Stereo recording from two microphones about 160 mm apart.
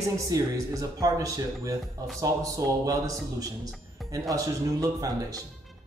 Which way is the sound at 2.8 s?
20° right (ahead or behind).